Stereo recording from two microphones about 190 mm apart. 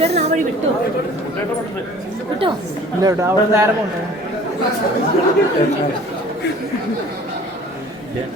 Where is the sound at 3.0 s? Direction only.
15° right (ahead or behind).